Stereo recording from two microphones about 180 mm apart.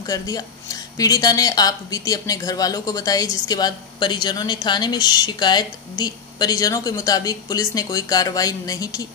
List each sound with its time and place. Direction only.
0.0 s speech: 20° left (ahead or behind)